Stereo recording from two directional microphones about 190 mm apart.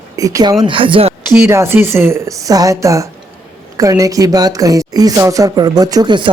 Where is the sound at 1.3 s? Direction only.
15° right (ahead or behind).